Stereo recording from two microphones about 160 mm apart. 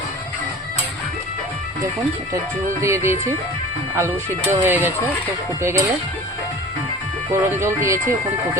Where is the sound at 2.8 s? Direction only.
15° right (ahead or behind).